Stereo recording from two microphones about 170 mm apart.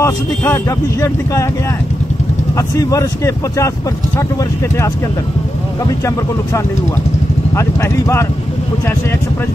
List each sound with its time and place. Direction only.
0.0 s speech: 15° left (ahead or behind)
2.5 s speech: 20° left (ahead or behind)
5.9 s speech: 15° left (ahead or behind)